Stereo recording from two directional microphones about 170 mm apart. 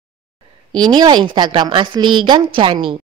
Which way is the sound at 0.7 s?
25° right (ahead or behind).